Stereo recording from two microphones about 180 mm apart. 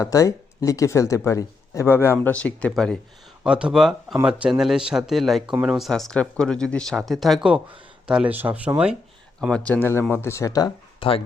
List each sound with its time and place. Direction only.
0.0 s speech: 20° left (ahead or behind); by 9.0 s 5° right (ahead or behind)
9.4 s speech: 5° left (ahead or behind); by 11.1 s 20° left (ahead or behind)